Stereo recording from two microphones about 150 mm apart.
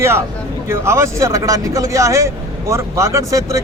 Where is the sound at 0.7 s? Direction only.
20° right (ahead or behind).